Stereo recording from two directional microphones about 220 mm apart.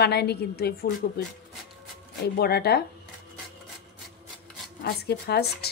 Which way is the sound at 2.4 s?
45° left (ahead or behind).